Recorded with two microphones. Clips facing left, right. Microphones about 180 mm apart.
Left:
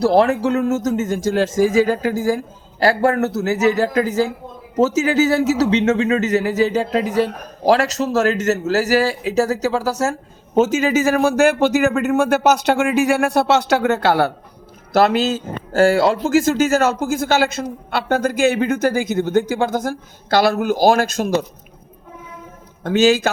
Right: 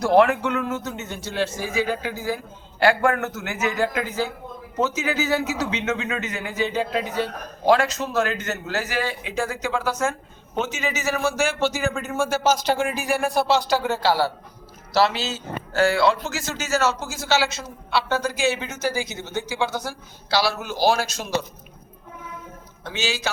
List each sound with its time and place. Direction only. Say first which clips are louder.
0.0 s speech: left 3 dB; 35° left (ahead or behind); by 21.3 s 55° left (ahead or behind)
22.8 s speech: left 13 dB; 50° left (ahead or behind)